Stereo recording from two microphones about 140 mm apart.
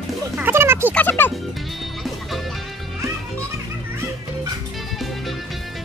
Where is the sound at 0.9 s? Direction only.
15° left (ahead or behind).